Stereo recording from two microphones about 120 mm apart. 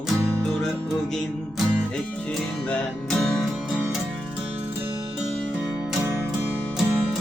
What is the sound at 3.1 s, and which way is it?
Music, 5° left (ahead or behind).